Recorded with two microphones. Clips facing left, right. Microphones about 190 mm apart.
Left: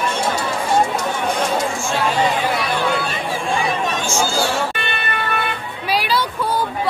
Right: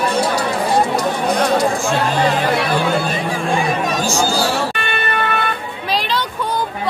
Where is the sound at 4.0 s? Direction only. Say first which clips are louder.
Right 2 dB; 35° right (ahead or behind).